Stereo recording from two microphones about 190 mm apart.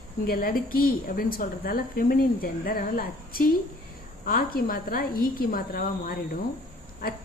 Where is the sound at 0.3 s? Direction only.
50° left (ahead or behind).